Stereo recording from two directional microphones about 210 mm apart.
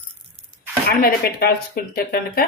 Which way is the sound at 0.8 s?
45° left (ahead or behind).